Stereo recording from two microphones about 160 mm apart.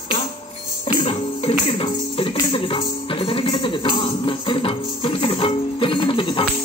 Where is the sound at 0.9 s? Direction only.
35° left (ahead or behind).